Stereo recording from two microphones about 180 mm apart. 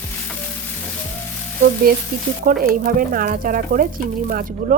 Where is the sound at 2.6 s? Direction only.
55° right (ahead or behind).